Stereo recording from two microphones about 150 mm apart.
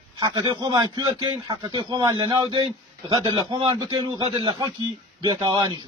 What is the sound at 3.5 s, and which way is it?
A man's voice, 35° right (ahead or behind).